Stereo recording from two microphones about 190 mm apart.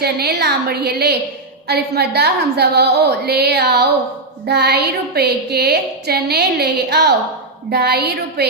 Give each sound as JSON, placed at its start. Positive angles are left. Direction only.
{"t": 0.0, "sound": "a woman's voice", "side_deg": -55}